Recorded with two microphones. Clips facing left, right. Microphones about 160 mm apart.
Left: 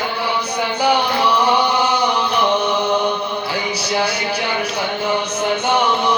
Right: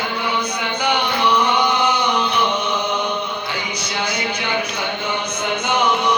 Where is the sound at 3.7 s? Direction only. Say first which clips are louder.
Left 5 dB; 35° left (ahead or behind).